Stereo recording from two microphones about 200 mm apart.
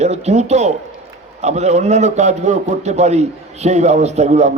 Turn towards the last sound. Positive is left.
turn(degrees=-35)  # may be behind; listen again after turning